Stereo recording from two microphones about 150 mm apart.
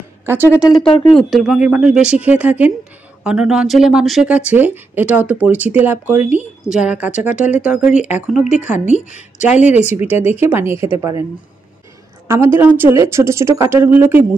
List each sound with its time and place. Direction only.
0.2 s a sound: 15° right (ahead or behind)
1.1 s a woman's voice: centre (ahead or behind); by 11.2 s 20° right (ahead or behind)
12.3 s speech: 15° right (ahead or behind)